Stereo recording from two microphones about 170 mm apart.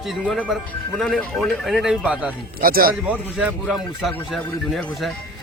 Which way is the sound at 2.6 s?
60° right (ahead or behind).